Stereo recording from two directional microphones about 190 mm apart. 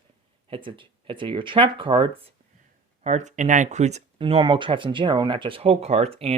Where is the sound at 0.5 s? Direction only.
25° right (ahead or behind).